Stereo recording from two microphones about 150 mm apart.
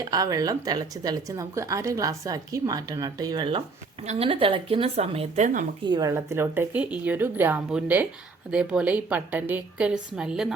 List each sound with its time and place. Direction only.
0.0 s speech: 25° right (ahead or behind)
4.0 s a woman's voice: 45° right (ahead or behind)
5.8 s a woman's voice: 25° right (ahead or behind); by 10.5 s 5° right (ahead or behind)